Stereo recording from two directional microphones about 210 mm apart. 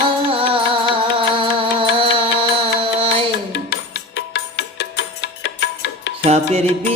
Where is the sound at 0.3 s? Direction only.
25° right (ahead or behind).